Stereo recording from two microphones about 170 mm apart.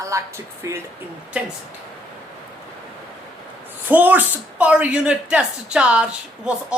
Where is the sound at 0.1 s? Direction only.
20° right (ahead or behind).